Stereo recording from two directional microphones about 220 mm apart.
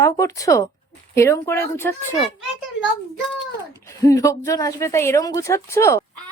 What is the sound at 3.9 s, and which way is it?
Speech, 15° left (ahead or behind).